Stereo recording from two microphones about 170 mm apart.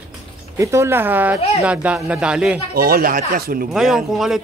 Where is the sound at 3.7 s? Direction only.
Centre (ahead or behind).